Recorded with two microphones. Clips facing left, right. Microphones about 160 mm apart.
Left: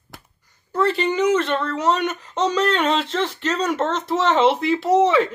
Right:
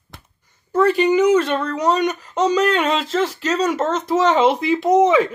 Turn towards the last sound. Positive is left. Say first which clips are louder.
# right 2 dB
turn(degrees=-10)  # may be behind; listen again after turning